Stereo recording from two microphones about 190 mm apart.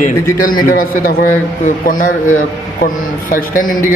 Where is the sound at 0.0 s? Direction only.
45° left (ahead or behind).